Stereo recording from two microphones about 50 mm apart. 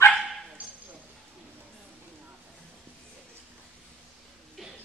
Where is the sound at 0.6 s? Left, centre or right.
Right.